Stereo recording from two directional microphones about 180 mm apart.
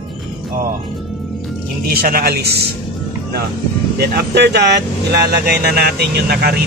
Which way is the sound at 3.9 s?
65° right (ahead or behind).